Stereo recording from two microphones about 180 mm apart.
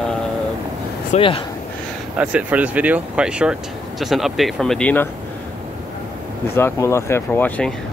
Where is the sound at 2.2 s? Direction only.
5° right (ahead or behind).